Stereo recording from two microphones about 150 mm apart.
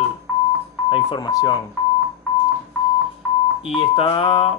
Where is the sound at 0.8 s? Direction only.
30° left (ahead or behind).